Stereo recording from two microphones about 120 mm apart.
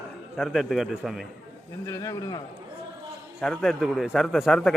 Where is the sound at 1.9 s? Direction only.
30° left (ahead or behind).